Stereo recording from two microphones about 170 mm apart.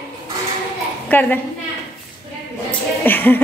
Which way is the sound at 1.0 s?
10° left (ahead or behind).